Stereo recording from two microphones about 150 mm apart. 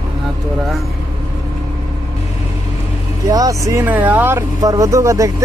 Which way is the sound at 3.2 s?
25° right (ahead or behind).